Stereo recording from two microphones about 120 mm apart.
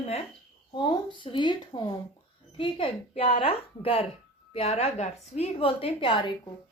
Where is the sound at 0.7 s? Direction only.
40° left (ahead or behind).